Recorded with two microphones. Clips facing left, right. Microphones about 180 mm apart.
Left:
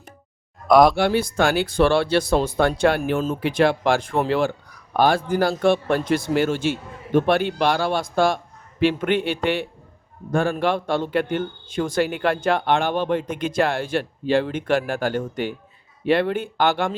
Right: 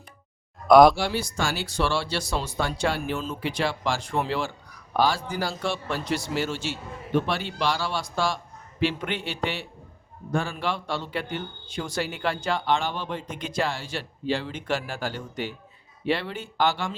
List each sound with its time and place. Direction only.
0.7 s speech: centre (ahead or behind)
0.9 s speech: 55° left (ahead or behind)